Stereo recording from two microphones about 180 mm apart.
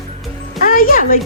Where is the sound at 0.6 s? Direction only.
50° left (ahead or behind).